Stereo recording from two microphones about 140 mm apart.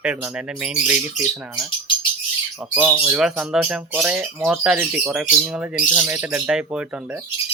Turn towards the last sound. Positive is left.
turn(degrees=-15)  # may be behind; listen again after turning